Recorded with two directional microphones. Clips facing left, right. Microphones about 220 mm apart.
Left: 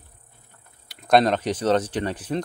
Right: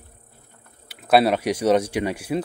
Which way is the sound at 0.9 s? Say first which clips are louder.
Right 1 dB; 5° right (ahead or behind).